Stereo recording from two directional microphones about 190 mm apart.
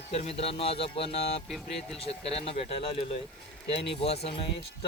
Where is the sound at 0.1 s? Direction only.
30° left (ahead or behind).